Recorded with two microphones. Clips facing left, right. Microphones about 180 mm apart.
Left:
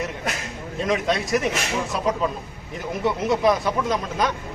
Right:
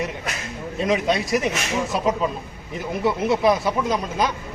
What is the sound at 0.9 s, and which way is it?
Speech, centre (ahead or behind).